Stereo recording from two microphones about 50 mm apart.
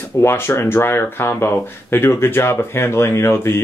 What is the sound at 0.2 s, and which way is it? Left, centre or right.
Speech, left.